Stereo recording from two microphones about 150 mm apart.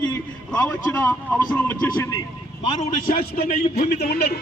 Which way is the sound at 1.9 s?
25° left (ahead or behind).